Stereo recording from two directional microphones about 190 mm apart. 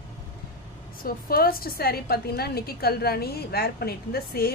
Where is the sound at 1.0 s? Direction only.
50° left (ahead or behind).